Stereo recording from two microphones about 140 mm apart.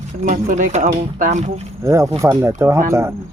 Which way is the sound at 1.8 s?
20° right (ahead or behind).